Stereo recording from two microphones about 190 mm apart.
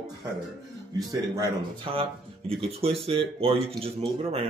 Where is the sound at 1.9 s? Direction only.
30° right (ahead or behind).